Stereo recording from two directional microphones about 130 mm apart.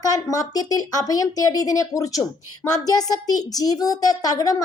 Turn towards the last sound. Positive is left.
turn(degrees=30)  # may be behind; listen again after turning